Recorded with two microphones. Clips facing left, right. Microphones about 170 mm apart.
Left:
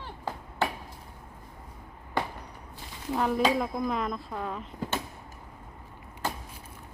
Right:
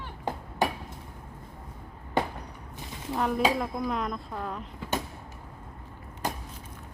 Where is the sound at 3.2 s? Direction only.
Centre (ahead or behind).